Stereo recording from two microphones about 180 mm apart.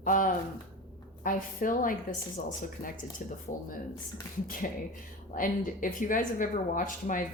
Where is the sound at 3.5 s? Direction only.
45° left (ahead or behind).